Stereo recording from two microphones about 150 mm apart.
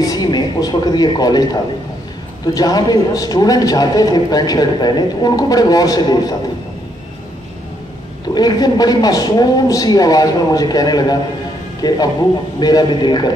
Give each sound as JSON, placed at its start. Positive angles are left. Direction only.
{"t": 0.0, "sound": "a man's voice", "side_deg": 25}
{"t": 8.4, "sound": "a man's voice", "side_deg": 25}